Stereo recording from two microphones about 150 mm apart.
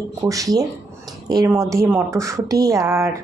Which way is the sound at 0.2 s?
20° right (ahead or behind).